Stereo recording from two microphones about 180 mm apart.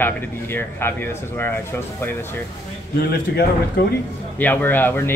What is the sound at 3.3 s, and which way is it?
Speech, 65° left (ahead or behind).